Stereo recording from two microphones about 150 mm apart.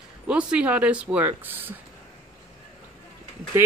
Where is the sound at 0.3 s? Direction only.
10° right (ahead or behind).